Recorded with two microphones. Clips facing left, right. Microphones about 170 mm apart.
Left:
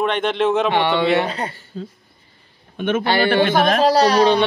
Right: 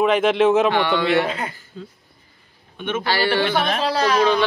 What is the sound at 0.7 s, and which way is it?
Speech, 20° left (ahead or behind).